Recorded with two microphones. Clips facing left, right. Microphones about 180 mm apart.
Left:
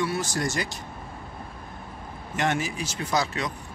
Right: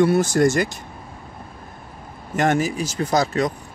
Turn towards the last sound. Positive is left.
turn(degrees=-45)  # may be behind; listen again after turning